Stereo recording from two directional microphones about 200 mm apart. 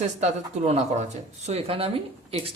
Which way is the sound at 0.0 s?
35° right (ahead or behind).